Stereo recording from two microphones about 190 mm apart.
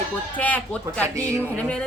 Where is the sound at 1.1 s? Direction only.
15° right (ahead or behind).